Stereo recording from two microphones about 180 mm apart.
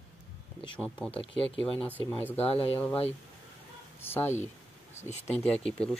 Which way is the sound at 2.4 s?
35° left (ahead or behind).